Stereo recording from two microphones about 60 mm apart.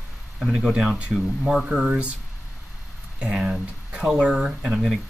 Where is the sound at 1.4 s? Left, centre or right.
Centre.